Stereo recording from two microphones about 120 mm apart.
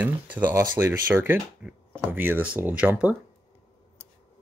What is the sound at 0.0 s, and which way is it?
Speech, 15° right (ahead or behind).